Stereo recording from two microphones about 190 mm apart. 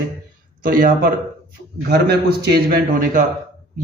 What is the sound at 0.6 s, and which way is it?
A man's voice, 50° right (ahead or behind).